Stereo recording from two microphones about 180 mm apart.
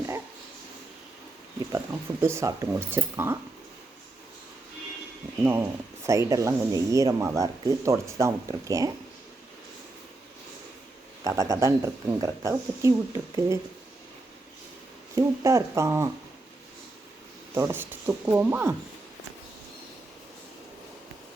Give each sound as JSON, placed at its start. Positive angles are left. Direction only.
{"t": 2.2, "sound": "speech", "side_deg": -15}
{"t": 5.4, "sound": "speech", "side_deg": -15}
{"t": 11.2, "sound": "speech", "side_deg": -20}
{"t": 15.1, "sound": "speech", "side_deg": -15}
{"t": 17.5, "sound": "speech", "side_deg": -15}